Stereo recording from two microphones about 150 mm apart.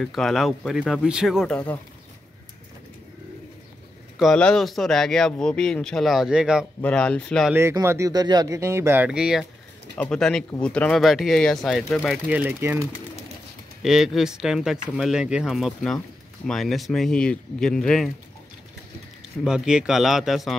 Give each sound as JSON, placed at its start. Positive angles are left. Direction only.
{"t": 0.0, "sound": "speech", "side_deg": 0}
{"t": 4.2, "sound": "speech", "side_deg": 5}
{"t": 6.8, "sound": "speech", "side_deg": 5}
{"t": 7.5, "sound": "speech", "side_deg": -20}
{"t": 12.3, "sound": "speech", "side_deg": -10}
{"t": 13.8, "sound": "speech", "side_deg": -5}
{"t": 19.4, "sound": "speech", "side_deg": -5}